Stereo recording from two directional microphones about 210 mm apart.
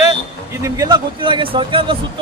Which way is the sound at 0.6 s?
15° right (ahead or behind).